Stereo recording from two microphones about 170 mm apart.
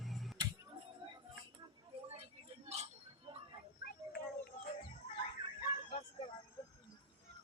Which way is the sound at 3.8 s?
65° left (ahead or behind).